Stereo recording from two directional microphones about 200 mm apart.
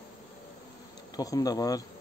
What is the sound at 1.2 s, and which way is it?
Speech, 20° left (ahead or behind).